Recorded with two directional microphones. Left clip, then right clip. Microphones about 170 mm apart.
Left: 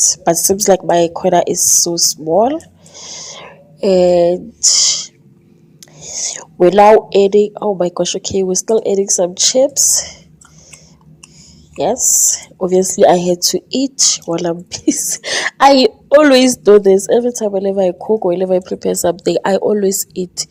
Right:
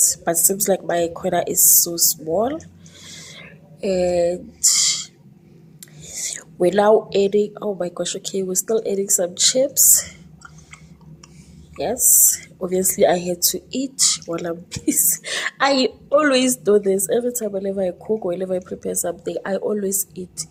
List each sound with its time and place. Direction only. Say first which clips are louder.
0.1 s speech: left 8 dB; 30° left (ahead or behind)
11.8 s a woman's voice: left 6 dB; 30° left (ahead or behind)